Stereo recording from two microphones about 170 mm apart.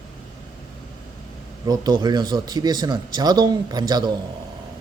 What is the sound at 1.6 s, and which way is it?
Speech, 25° right (ahead or behind).